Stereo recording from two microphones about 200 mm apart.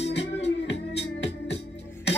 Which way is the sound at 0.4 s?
60° left (ahead or behind).